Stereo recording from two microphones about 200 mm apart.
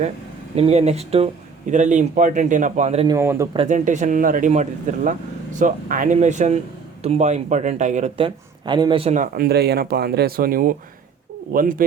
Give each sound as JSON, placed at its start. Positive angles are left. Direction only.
{"t": 0.5, "sound": "a man's voice", "side_deg": -30}
{"t": 3.1, "sound": "speech", "side_deg": -15}
{"t": 3.6, "sound": "a man's voice", "side_deg": -35}
{"t": 8.6, "sound": "a man's voice", "side_deg": -20}
{"t": 9.1, "sound": "speech", "side_deg": -45}